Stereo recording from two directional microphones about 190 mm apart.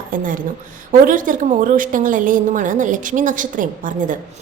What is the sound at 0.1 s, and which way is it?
A woman's voice, 45° right (ahead or behind).